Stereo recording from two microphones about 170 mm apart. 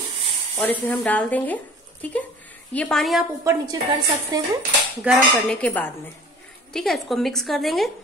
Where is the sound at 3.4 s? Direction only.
15° right (ahead or behind).